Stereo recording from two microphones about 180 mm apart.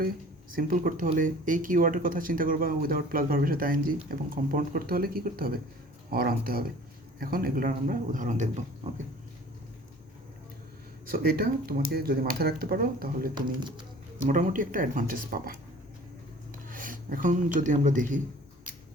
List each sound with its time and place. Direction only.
0.5 s speech: 50° right (ahead or behind)
11.0 s speech: 55° right (ahead or behind)
13.3 s speech: 25° right (ahead or behind)
14.3 s speech: 45° right (ahead or behind)
16.6 s speech: 50° right (ahead or behind)